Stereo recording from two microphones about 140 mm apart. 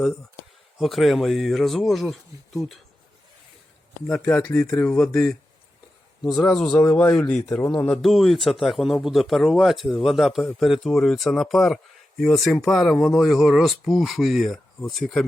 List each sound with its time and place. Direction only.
0.8 s speech: centre (ahead or behind)
4.0 s speech: 10° left (ahead or behind)
4.9 s speech: 5° left (ahead or behind)